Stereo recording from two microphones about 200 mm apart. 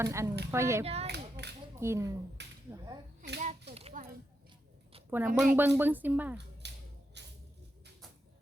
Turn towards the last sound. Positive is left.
turn(degrees=-60)  # may be behind; listen again after turning